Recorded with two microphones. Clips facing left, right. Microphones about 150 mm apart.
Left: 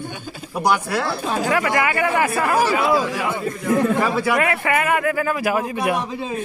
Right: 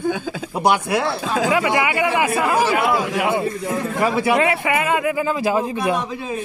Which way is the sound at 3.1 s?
60° right (ahead or behind).